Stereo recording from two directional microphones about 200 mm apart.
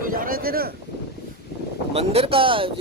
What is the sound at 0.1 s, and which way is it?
Boat, 45° right (ahead or behind).